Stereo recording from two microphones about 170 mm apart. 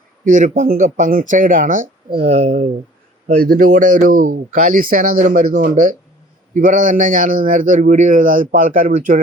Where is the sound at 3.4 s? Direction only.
55° right (ahead or behind).